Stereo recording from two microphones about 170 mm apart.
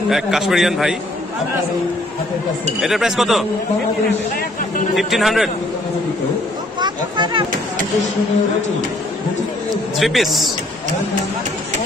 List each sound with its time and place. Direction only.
0.1 s a man's voice: centre (ahead or behind)
2.8 s a man's voice: centre (ahead or behind)
4.9 s a man's voice: centre (ahead or behind)
6.8 s a sound: 25° right (ahead or behind)
9.9 s a man's voice: centre (ahead or behind)